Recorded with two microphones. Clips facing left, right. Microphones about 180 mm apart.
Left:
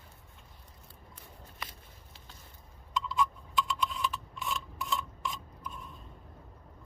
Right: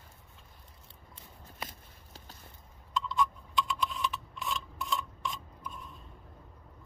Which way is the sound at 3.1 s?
Centre (ahead or behind).